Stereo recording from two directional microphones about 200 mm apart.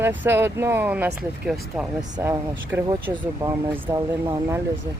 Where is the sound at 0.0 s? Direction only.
10° right (ahead or behind).